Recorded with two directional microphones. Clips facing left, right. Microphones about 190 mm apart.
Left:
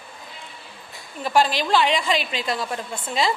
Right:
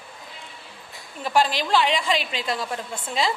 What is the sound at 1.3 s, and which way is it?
A woman's voice, 50° left (ahead or behind).